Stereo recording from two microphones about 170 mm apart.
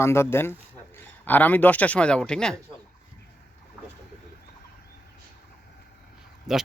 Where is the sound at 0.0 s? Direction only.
15° left (ahead or behind).